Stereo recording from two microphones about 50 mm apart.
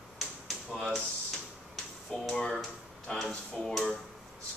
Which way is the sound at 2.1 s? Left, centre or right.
Centre.